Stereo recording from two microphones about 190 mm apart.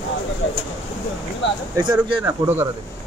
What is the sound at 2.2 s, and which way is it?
Speech, 10° right (ahead or behind).